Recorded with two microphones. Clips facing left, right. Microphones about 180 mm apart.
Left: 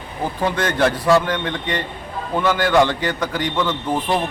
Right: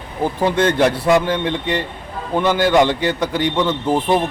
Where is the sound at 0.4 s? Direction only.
25° right (ahead or behind).